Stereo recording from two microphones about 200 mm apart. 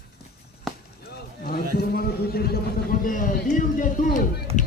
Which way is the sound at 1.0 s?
55° left (ahead or behind).